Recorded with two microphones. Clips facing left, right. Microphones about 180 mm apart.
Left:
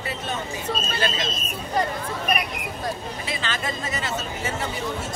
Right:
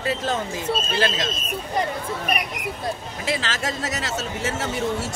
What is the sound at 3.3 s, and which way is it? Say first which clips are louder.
Speech: right 5 dB; 85° right.